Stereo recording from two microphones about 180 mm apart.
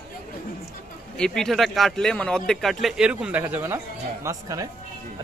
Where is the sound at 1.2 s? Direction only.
Centre (ahead or behind); by 4.7 s 20° right (ahead or behind).